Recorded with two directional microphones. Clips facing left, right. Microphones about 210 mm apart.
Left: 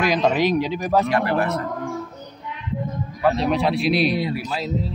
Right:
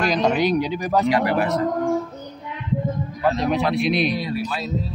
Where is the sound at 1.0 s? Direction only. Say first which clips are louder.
Right 1 dB; 15° right (ahead or behind).